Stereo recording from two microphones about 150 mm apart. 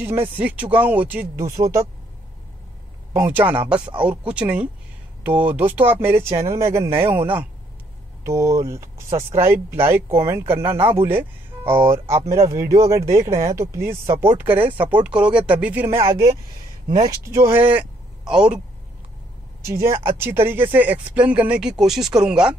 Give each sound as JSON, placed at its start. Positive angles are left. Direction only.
{"t": 0.0, "sound": "speech", "side_deg": -15}
{"t": 3.1, "sound": "speech", "side_deg": -15}
{"t": 19.6, "sound": "speech", "side_deg": -15}